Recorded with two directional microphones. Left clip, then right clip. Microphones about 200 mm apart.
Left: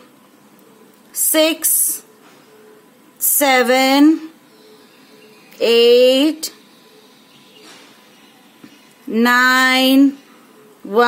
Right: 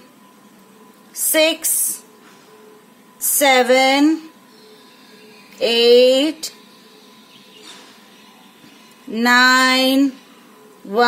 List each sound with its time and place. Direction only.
1.1 s a sound: 30° left (ahead or behind)
3.3 s female singing: 30° left (ahead or behind)
5.7 s female singing: 25° left (ahead or behind)
9.1 s female singing: 25° left (ahead or behind)